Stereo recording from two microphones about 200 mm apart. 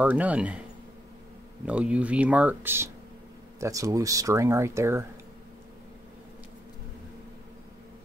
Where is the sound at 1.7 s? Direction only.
5° right (ahead or behind).